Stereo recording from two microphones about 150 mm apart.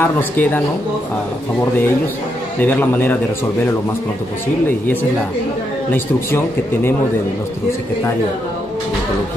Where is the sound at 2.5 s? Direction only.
10° left (ahead or behind).